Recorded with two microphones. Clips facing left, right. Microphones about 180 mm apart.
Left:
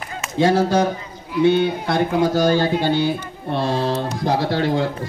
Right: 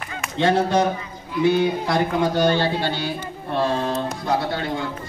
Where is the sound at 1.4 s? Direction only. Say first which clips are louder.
Left 2 dB; 30° left (ahead or behind).